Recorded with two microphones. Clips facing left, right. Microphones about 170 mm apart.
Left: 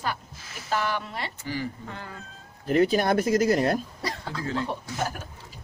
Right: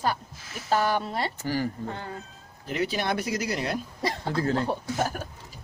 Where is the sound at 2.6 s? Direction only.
45° left (ahead or behind).